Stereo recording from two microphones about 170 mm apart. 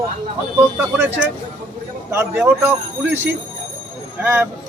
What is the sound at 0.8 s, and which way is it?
Speech, 10° right (ahead or behind).